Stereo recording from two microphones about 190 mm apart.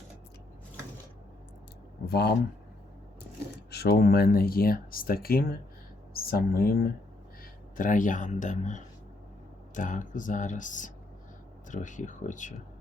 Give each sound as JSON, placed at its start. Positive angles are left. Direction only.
{"t": 2.0, "sound": "speech", "side_deg": 60}
{"t": 3.7, "sound": "a man's voice", "side_deg": 55}